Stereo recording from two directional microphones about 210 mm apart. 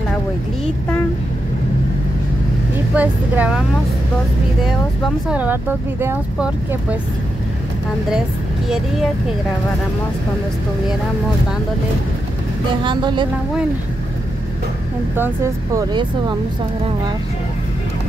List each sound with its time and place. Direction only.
3.0 s speech: 5° right (ahead or behind)
5.3 s speech: 10° right (ahead or behind)
12.8 s speech: 20° right (ahead or behind)
15.1 s speech: 10° right (ahead or behind)